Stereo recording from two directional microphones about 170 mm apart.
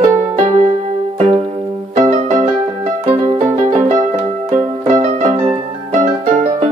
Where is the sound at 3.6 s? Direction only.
40° right (ahead or behind).